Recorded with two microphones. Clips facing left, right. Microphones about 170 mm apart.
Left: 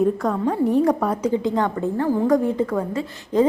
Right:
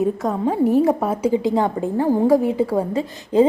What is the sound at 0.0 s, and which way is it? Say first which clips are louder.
A woman's voice: even; 5° right (ahead or behind).